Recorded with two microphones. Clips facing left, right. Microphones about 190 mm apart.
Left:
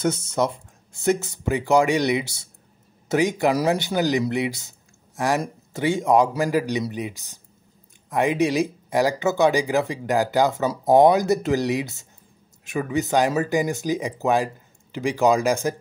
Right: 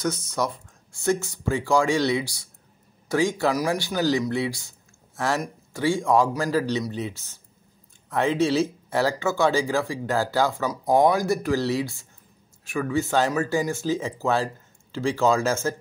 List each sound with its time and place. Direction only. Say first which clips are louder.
0.0 s speech: left 4 dB; 25° left (ahead or behind)